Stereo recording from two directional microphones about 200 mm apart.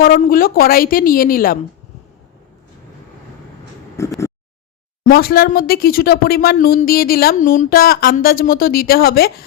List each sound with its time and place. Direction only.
0.0 s speech: 45° left (ahead or behind)
4.0 s a sound: 15° left (ahead or behind)
5.0 s speech: 50° left (ahead or behind)